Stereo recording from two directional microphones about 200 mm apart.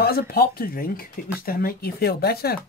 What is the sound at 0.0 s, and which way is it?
Speech, 50° left (ahead or behind).